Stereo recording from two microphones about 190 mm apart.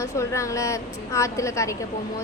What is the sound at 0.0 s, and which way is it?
A woman's voice, 15° left (ahead or behind).